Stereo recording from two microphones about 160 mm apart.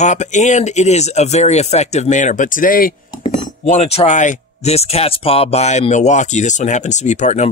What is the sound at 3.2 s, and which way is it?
Speech, 45° left (ahead or behind).